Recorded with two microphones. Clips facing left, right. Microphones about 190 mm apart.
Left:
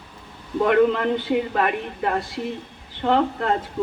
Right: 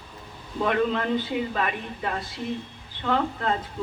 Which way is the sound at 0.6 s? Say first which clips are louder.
Left 6 dB; 60° left (ahead or behind).